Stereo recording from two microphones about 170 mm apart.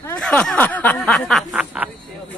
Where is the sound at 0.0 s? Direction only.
10° left (ahead or behind).